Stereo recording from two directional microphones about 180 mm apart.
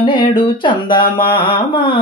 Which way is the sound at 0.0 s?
30° left (ahead or behind).